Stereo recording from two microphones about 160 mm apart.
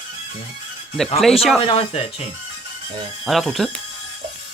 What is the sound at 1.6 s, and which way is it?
Speech, 35° left (ahead or behind).